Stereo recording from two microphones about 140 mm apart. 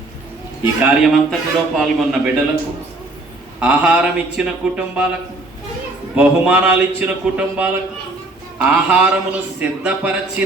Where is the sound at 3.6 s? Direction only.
10° right (ahead or behind).